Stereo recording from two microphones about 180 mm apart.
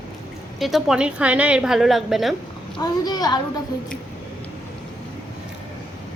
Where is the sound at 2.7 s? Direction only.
20° left (ahead or behind).